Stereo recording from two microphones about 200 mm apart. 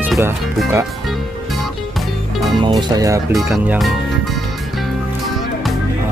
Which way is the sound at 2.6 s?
20° right (ahead or behind).